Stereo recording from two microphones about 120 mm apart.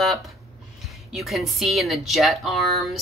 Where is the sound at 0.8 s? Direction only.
Centre (ahead or behind).